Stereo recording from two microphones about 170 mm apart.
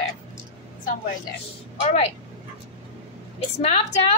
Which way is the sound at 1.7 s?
40° left (ahead or behind).